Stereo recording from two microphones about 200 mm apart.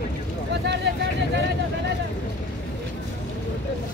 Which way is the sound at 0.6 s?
60° right (ahead or behind).